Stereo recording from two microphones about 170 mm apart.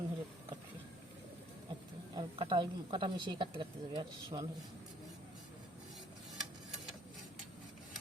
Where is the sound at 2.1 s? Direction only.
25° right (ahead or behind).